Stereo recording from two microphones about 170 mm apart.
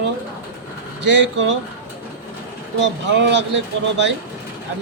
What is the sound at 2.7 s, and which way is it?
Speech, 90° right.